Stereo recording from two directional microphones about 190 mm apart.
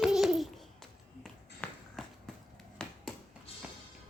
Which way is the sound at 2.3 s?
5° left (ahead or behind).